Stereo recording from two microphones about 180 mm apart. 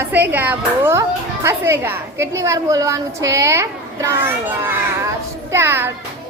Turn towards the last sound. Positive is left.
turn(degrees=-15)  # may be behind; listen again after turning